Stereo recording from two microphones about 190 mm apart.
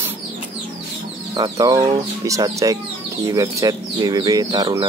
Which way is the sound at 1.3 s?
20° right (ahead or behind).